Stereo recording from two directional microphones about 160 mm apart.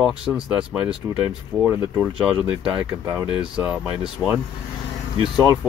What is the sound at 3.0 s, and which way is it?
Speech, 15° right (ahead or behind).